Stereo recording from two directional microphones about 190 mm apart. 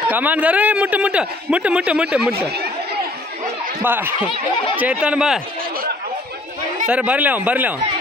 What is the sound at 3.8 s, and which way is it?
Speech, 10° right (ahead or behind).